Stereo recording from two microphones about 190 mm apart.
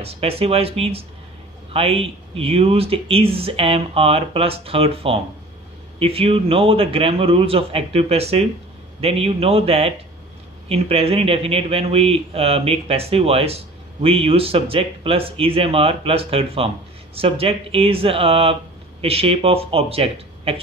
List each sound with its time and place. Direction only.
0.0 s a man's voice: 30° right (ahead or behind)